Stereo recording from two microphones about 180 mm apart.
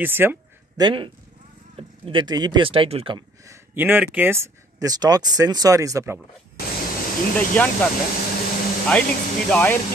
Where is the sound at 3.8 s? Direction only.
10° right (ahead or behind).